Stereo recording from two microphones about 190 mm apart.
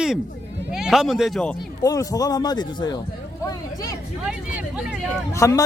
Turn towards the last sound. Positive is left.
turn(degrees=15)  # may be behind; listen again after turning